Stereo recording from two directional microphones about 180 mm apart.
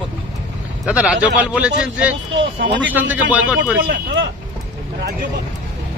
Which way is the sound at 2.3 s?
90° right.